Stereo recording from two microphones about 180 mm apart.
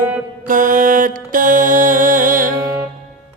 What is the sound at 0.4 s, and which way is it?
Music, 50° right (ahead or behind).